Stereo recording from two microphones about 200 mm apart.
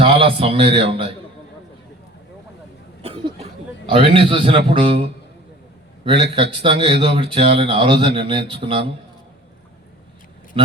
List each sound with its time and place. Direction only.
0.0 s a man's voice: 25° right (ahead or behind)
3.0 s a sound: 30° right (ahead or behind)
3.8 s speech: 25° right (ahead or behind)
6.3 s speech: 25° right (ahead or behind)